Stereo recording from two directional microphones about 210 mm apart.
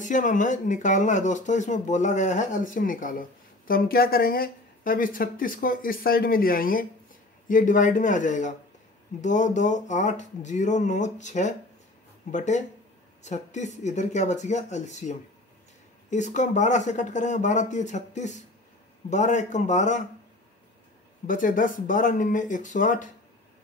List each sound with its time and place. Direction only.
0.0 s speech: 35° left (ahead or behind)
21.3 s speech: 40° left (ahead or behind)